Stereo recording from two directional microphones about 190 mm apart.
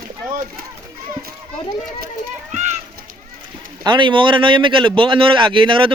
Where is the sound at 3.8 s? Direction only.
25° right (ahead or behind).